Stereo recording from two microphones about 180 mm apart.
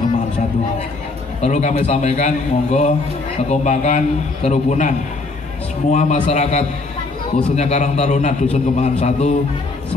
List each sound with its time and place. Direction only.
1.4 s a man's voice: 40° left (ahead or behind)